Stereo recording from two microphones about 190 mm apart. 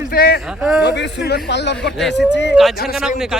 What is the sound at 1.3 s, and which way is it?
Speech, 65° left (ahead or behind).